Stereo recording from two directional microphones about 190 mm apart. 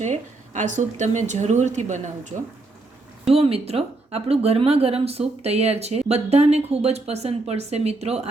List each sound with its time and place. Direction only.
0.0 s speech: 40° right (ahead or behind)